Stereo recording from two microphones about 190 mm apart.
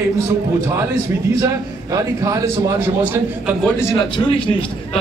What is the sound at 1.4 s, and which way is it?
A man's voice, 20° right (ahead or behind).